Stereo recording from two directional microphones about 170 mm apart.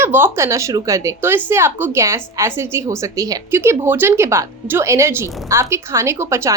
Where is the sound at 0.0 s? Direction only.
15° right (ahead or behind).